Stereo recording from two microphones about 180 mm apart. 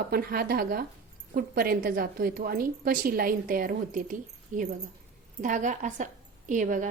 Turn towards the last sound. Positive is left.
turn(degrees=-45)  # may be behind; listen again after turning